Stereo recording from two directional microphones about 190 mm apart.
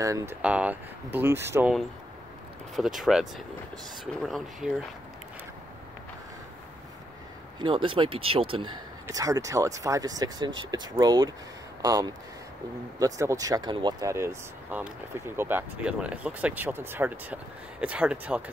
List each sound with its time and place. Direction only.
0.0 s speech: 15° right (ahead or behind)
2.7 s speech: centre (ahead or behind)
7.5 s speech: 25° right (ahead or behind)
9.0 s speech: 20° right (ahead or behind)